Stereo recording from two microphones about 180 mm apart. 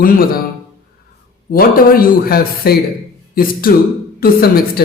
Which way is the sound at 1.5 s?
55° left (ahead or behind).